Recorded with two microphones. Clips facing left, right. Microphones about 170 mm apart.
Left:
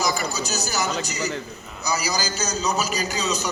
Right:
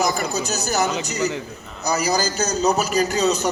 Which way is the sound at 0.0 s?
60° right (ahead or behind).